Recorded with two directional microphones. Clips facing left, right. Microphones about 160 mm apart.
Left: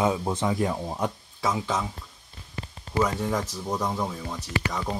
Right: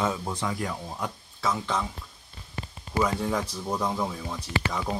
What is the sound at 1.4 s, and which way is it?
Speech, 10° left (ahead or behind).